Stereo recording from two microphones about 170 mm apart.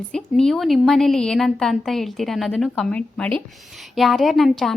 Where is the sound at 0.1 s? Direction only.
5° left (ahead or behind).